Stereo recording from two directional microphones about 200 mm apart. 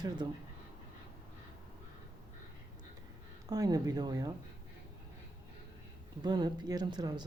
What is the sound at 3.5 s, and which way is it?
Speech, 20° right (ahead or behind).